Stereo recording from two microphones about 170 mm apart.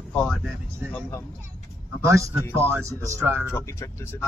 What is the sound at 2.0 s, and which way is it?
Speech, 15° right (ahead or behind).